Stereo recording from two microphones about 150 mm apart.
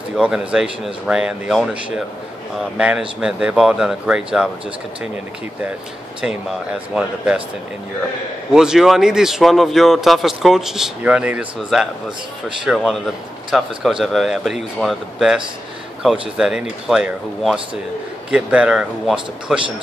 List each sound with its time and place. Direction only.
0.2 s speech: 5° right (ahead or behind)
7.0 s speech: 5° right (ahead or behind)
8.5 s speech: 5° right (ahead or behind)